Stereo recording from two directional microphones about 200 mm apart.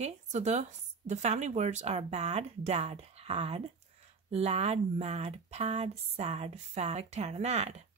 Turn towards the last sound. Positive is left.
turn(degrees=-30)  # may be behind; listen again after turning